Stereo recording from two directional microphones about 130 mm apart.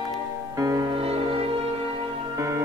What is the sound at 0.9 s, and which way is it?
Music, 45° right (ahead or behind).